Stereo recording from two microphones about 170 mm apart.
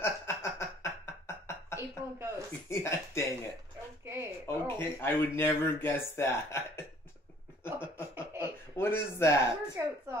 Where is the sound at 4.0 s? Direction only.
15° right (ahead or behind).